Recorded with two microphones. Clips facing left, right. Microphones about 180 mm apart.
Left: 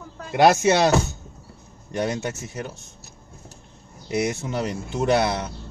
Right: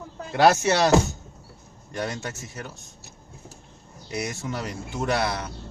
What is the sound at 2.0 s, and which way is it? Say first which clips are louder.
Speech: left 5 dB; 20° left (ahead or behind).